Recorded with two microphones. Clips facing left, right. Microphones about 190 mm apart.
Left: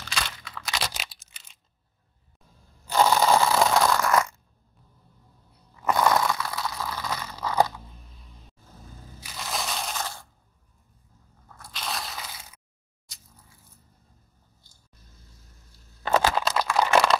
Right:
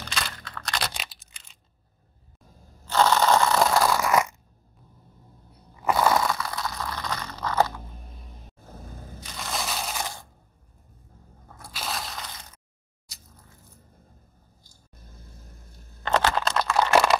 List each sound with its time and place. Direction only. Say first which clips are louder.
0.0 s crunch: even; centre (ahead or behind)
2.9 s crunch: even; 10° left (ahead or behind); by 4.4 s 15° right (ahead or behind)
5.8 s crushing: even; 5° right (ahead or behind); by 7.7 s 10° left (ahead or behind)
7.9 s single-lens reflex camera: right 5 dB; 50° right (ahead or behind)
9.2 s crushing: even; 5° left (ahead or behind)
11.7 s crushing: right 1 dB; centre (ahead or behind)
16.0 s a sound: left 1 dB; 5° left (ahead or behind)